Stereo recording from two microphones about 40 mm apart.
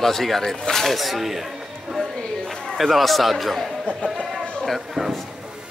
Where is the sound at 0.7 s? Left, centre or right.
Centre.